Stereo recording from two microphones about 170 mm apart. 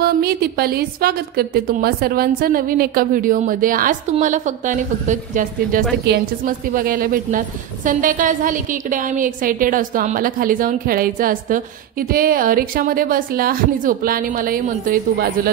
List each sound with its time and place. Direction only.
0.0 s a woman's voice: 65° right (ahead or behind)